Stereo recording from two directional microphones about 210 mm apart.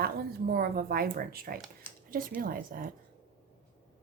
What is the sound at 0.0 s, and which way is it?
Speech, 45° right (ahead or behind).